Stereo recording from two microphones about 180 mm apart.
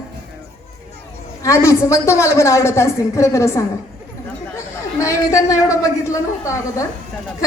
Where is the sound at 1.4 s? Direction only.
15° left (ahead or behind).